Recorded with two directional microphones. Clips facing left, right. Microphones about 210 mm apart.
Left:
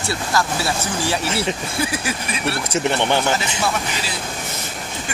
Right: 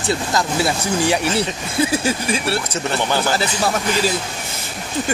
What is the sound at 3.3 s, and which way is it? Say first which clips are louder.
Speech: right 2 dB; 40° right (ahead or behind).